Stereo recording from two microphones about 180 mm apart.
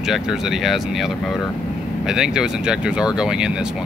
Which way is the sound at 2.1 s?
5° right (ahead or behind).